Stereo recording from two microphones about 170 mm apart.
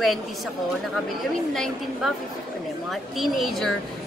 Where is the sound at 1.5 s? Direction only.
Centre (ahead or behind).